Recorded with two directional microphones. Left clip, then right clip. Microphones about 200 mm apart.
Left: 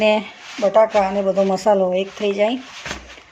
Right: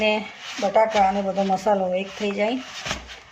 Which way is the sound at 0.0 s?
40° left (ahead or behind).